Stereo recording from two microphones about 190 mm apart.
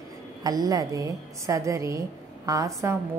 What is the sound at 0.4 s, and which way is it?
A woman's voice, 20° right (ahead or behind).